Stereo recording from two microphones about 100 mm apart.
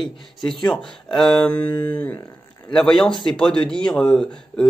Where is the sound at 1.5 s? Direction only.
15° left (ahead or behind).